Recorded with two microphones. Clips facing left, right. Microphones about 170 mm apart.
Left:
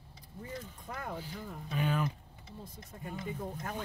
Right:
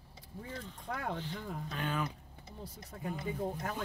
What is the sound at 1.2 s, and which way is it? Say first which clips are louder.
Speech: right 2 dB; 5° left (ahead or behind).